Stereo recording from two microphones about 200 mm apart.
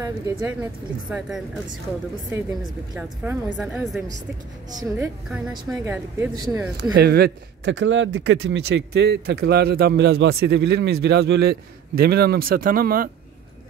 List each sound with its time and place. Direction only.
0.0 s a woman's voice: 10° right (ahead or behind)
2.9 s a woman's voice: 5° right (ahead or behind)
4.7 s a woman's voice: 15° right (ahead or behind)
5.3 s a woman's voice: 5° right (ahead or behind)
6.1 s a woman's voice: 15° right (ahead or behind)
6.8 s speech: 55° right (ahead or behind)